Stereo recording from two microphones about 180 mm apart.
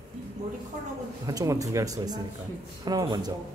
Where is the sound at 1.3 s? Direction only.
20° right (ahead or behind).